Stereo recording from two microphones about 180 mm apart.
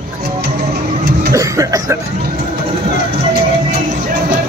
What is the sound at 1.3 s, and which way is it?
Speech, 15° right (ahead or behind).